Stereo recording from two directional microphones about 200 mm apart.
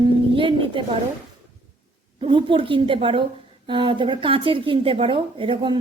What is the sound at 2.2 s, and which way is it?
Speech, 25° right (ahead or behind).